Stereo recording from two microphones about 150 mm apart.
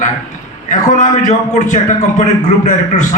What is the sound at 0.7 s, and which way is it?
A man's voice, 55° left (ahead or behind).